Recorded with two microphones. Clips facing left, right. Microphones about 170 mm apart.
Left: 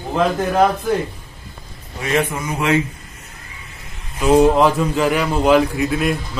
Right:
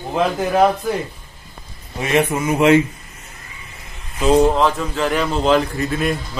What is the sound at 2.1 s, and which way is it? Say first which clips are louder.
Speech: right 4 dB; 25° right (ahead or behind).